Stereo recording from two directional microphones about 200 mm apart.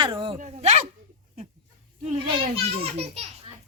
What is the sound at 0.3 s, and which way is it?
Speech, 35° right (ahead or behind).